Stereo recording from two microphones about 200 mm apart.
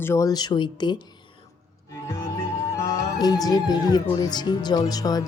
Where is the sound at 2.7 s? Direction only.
20° left (ahead or behind).